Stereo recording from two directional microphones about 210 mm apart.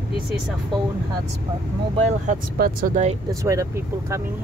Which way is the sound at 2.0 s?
40° right (ahead or behind).